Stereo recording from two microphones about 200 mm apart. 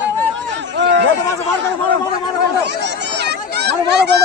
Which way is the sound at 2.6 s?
60° right (ahead or behind).